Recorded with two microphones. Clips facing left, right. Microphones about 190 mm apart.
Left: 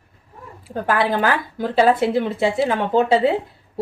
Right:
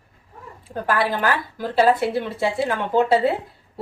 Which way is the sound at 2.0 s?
20° left (ahead or behind).